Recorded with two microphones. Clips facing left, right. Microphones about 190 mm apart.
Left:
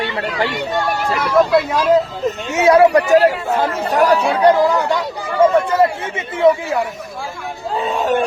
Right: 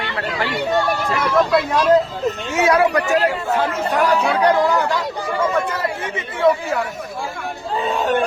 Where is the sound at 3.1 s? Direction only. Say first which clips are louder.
Left 5 dB; 40° left (ahead or behind).